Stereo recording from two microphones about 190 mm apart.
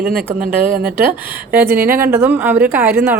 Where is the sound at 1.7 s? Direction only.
50° right (ahead or behind).